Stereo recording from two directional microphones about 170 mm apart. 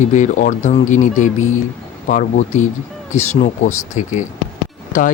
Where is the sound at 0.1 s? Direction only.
45° left (ahead or behind).